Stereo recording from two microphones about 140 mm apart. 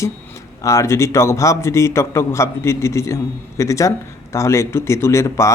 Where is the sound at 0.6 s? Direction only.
20° left (ahead or behind).